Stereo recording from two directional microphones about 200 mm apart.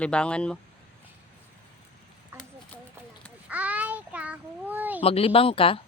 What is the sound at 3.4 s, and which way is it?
Child singing, 10° right (ahead or behind).